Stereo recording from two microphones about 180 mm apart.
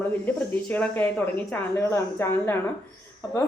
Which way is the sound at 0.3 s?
10° left (ahead or behind).